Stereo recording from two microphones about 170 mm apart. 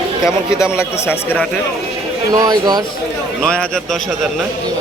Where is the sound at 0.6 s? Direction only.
15° left (ahead or behind).